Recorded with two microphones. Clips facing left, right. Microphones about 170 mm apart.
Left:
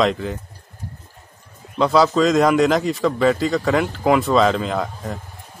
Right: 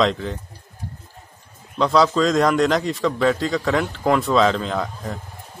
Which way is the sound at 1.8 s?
Centre (ahead or behind).